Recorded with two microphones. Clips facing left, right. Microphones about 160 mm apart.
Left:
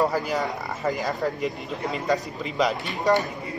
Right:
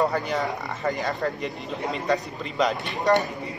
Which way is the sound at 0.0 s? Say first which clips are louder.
Even; centre (ahead or behind).